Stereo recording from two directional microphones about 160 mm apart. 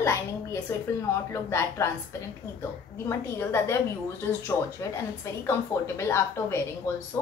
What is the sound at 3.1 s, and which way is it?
Speech, 15° left (ahead or behind).